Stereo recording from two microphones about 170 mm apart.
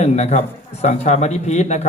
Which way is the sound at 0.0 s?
40° left (ahead or behind).